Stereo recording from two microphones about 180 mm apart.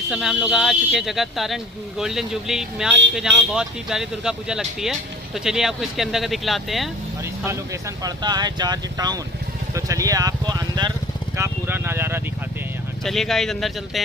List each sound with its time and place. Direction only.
0.1 s speech: 5° right (ahead or behind)
8.0 s speech: 20° right (ahead or behind)
13.0 s speech: centre (ahead or behind)